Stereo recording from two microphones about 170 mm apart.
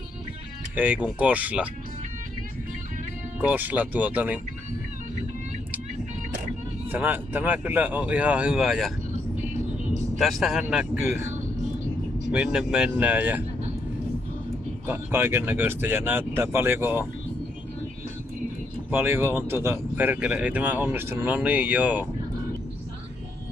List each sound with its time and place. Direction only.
0.7 s speech: 10° right (ahead or behind)
3.3 s speech: 10° right (ahead or behind)
6.9 s speech: 10° right (ahead or behind)
9.8 s vehicle: 45° right (ahead or behind)
10.1 s speech: centre (ahead or behind)
12.3 s speech: 5° right (ahead or behind)
14.9 s speech: 10° right (ahead or behind)
18.9 s speech: 15° right (ahead or behind)